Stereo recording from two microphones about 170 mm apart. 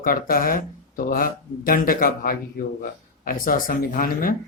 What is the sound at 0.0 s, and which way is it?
Speech, 55° left (ahead or behind).